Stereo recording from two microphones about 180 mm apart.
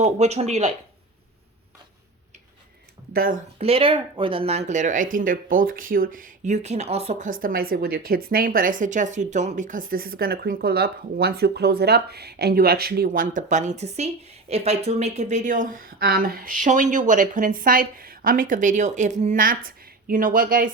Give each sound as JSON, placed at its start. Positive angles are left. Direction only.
{"t": 0.0, "sound": "speech", "side_deg": -40}
{"t": 3.1, "sound": "speech", "side_deg": -50}
{"t": 3.6, "sound": "speech", "side_deg": -30}